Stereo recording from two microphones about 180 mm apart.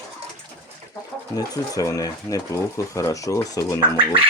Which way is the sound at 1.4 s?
20° left (ahead or behind).